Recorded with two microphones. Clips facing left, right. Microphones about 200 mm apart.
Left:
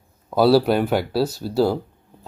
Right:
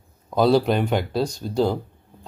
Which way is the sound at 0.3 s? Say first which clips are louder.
Left 2 dB; 5° left (ahead or behind).